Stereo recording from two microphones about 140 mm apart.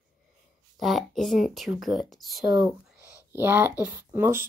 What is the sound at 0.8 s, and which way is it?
Speech, centre (ahead or behind).